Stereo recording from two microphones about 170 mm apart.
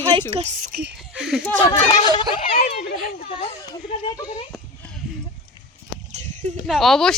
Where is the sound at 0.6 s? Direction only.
65° right (ahead or behind).